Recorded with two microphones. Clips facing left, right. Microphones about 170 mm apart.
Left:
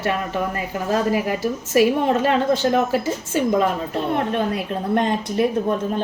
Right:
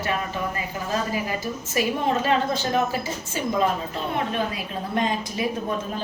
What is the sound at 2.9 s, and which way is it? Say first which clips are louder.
Speech: left 7 dB; 60° left (ahead or behind).